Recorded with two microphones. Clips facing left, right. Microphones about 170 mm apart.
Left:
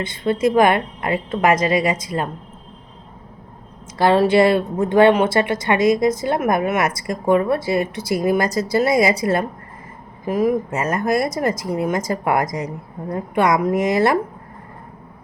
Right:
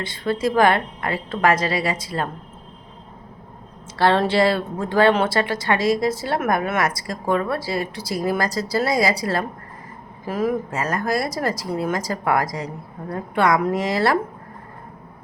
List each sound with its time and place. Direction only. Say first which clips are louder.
0.0 s a woman's voice: left 4 dB; 20° left (ahead or behind)
3.9 s a woman's voice: left 4 dB; 10° left (ahead or behind)